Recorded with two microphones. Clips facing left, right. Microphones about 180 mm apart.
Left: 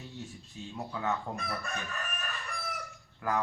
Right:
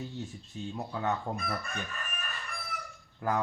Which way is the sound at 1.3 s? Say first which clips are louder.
Right 3 dB; 25° right (ahead or behind).